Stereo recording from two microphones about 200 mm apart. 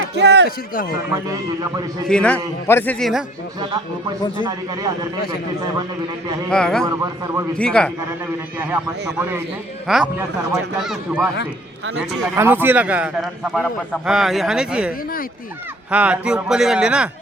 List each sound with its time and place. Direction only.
0.2 s speech: 60° right (ahead or behind)
0.7 s speech: 45° left (ahead or behind)
2.0 s a man's voice: 5° left (ahead or behind)
6.5 s a man's voice: 5° left (ahead or behind)
6.8 s a man's voice: 15° right (ahead or behind)
7.6 s a man's voice: 5° left (ahead or behind)
8.5 s a man's voice: 10° right (ahead or behind)
12.2 s a man's voice: 10° right (ahead or behind)